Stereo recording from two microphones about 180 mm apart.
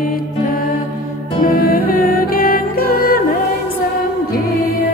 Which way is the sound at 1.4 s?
55° left (ahead or behind).